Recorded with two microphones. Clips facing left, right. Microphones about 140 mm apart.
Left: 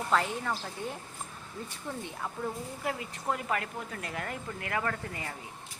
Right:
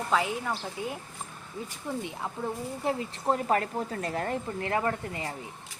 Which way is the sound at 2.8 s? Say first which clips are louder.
Right 5 dB; 30° right (ahead or behind).